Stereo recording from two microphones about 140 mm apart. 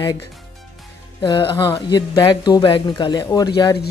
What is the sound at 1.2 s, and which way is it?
Speech, 35° left (ahead or behind).